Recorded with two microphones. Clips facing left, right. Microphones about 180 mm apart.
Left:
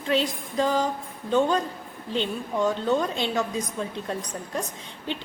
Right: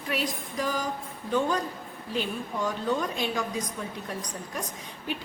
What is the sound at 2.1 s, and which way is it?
A woman's voice, 25° left (ahead or behind).